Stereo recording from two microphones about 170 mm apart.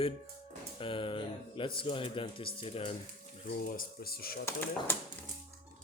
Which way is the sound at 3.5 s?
60° left (ahead or behind).